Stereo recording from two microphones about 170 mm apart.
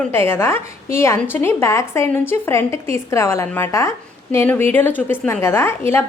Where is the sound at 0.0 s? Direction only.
15° left (ahead or behind).